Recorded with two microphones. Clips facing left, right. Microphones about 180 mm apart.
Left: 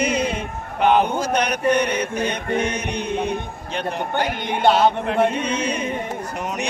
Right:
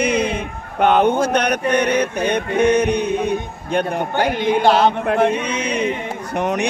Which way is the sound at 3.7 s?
50° right (ahead or behind).